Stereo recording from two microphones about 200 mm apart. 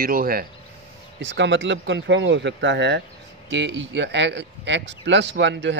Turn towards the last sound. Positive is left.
turn(degrees=-60)  # may be behind; listen again after turning